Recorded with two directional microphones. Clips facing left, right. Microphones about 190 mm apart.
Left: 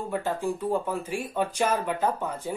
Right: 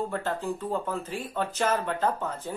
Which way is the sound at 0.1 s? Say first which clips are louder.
Left 2 dB; 10° left (ahead or behind).